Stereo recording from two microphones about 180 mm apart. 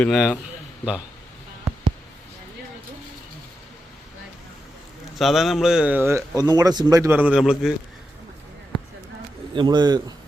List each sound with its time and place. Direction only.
0.0 s a man's voice: centre (ahead or behind)
5.1 s speech: centre (ahead or behind)
9.6 s a man's voice: 25° right (ahead or behind)